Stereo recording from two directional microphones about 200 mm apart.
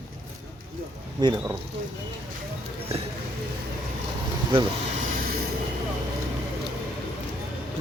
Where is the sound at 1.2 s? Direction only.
15° right (ahead or behind).